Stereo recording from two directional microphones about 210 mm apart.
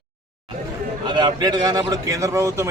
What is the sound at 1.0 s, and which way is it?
A man's voice, 20° right (ahead or behind).